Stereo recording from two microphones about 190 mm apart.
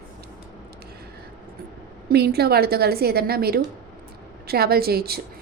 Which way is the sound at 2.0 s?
55° right (ahead or behind).